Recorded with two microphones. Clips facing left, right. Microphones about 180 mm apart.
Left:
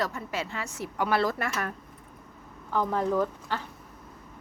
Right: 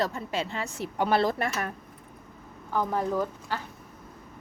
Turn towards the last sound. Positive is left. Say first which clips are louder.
# left 2 dB
turn(degrees=-10)  # may be behind; listen again after turning